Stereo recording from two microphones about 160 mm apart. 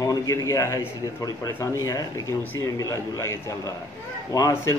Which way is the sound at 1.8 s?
20° left (ahead or behind).